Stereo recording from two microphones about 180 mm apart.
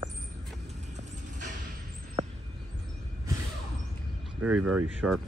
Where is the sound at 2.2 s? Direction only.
40° right (ahead or behind).